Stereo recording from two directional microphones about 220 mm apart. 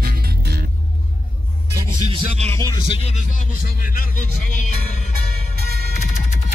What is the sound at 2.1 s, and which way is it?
Speech, 30° right (ahead or behind).